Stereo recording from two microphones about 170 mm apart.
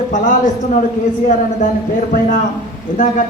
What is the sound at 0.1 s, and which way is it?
Speech, 45° left (ahead or behind).